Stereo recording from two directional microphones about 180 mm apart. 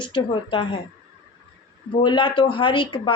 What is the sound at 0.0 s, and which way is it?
Speech, 25° left (ahead or behind).